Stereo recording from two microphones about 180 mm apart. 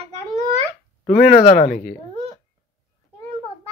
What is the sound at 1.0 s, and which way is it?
Speech, 35° left (ahead or behind).